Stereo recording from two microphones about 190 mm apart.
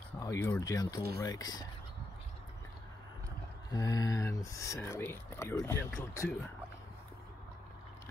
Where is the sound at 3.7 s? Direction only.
20° left (ahead or behind).